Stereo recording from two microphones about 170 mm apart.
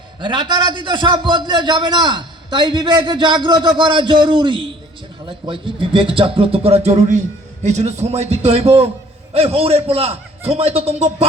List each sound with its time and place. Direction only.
0.2 s a man's voice: 25° right (ahead or behind)